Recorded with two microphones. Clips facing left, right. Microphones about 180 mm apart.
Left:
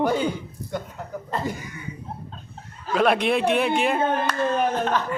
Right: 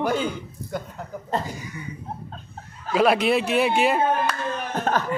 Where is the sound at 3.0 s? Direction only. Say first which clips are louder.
Right 1 dB; 5° right (ahead or behind).